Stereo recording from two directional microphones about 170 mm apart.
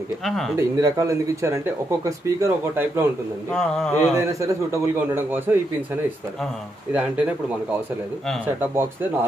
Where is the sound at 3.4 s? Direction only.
5° left (ahead or behind).